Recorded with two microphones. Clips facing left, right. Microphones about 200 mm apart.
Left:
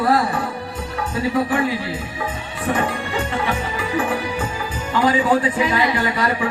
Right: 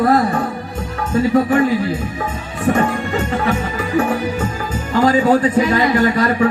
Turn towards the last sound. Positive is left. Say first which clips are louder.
# right 6 dB
turn(degrees=-45)  # may be behind; listen again after turning